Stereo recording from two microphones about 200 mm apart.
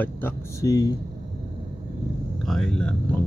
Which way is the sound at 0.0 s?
10° left (ahead or behind).